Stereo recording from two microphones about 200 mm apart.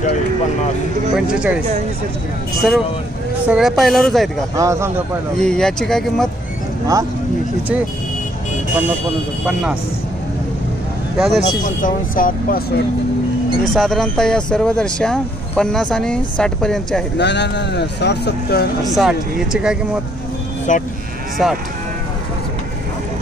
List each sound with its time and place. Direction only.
1.1 s speech: 5° right (ahead or behind)
2.6 s speech: centre (ahead or behind)
4.6 s a man's voice: 15° right (ahead or behind)
5.4 s speech: 5° left (ahead or behind)
11.1 s speech: centre (ahead or behind)
11.6 s speech: 40° left (ahead or behind)
13.7 s speech: centre (ahead or behind)
17.2 s speech: 60° left (ahead or behind)
18.9 s speech: centre (ahead or behind)
20.7 s speech: 40° left (ahead or behind)
21.4 s speech: 5° right (ahead or behind)